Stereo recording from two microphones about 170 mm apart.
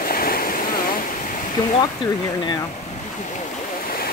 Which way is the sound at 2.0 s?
25° left (ahead or behind).